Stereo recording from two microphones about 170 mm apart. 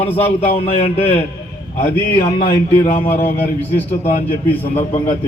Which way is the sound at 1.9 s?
10° left (ahead or behind).